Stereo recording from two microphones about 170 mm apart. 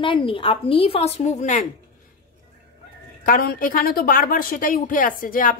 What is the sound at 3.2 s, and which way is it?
A woman's voice, 55° left (ahead or behind).